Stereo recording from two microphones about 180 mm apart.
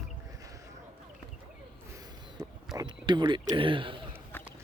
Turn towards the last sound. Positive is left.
turn(degrees=-30)  # may be behind; listen again after turning